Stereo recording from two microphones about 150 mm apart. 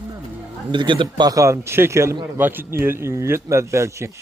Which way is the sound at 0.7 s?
35° right (ahead or behind).